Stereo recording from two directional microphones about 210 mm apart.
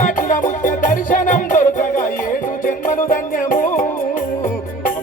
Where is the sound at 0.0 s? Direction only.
40° left (ahead or behind).